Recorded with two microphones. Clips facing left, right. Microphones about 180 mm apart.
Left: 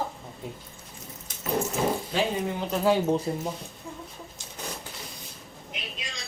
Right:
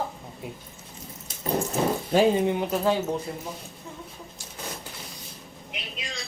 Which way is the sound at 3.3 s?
30° left (ahead or behind).